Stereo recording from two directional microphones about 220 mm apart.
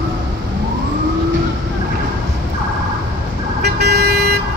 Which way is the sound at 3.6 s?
45° right (ahead or behind).